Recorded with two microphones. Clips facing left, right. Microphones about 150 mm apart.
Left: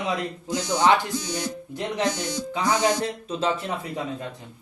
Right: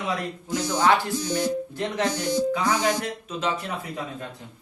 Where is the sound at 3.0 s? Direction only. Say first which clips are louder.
Left 3 dB; 30° left (ahead or behind).